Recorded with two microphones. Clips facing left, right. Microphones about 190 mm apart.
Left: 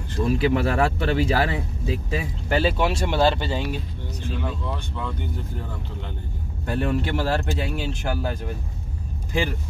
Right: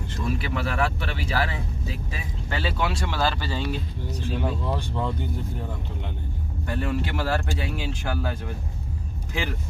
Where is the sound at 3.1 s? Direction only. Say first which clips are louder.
Left 6 dB; 25° left (ahead or behind).